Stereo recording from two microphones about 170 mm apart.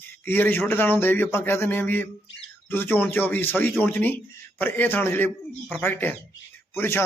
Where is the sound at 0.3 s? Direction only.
10° left (ahead or behind).